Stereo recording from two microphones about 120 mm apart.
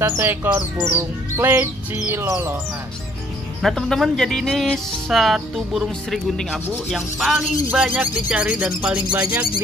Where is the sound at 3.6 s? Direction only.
5° left (ahead or behind).